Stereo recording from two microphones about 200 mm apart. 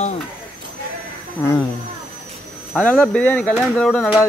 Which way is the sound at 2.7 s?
5° left (ahead or behind).